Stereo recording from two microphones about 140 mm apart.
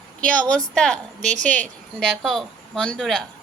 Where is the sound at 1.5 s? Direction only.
65° right (ahead or behind).